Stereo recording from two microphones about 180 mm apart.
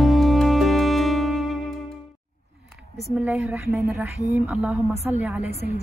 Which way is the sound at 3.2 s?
Centre (ahead or behind).